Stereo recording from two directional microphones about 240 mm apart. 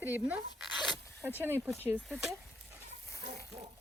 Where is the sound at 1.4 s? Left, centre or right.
Centre.